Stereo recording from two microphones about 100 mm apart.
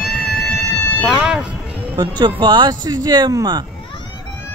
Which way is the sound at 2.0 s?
50° right (ahead or behind).